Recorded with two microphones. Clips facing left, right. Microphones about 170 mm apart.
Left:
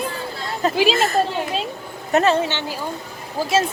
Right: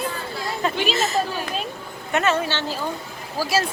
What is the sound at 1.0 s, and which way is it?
Speech, 55° left (ahead or behind).